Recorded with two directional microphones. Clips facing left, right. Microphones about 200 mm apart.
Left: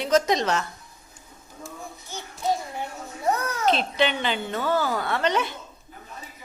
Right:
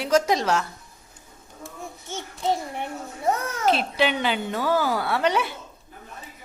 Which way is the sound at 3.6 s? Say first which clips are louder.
Right 1 dB; 10° right (ahead or behind).